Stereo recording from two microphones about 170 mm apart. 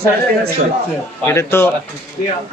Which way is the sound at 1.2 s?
15° left (ahead or behind).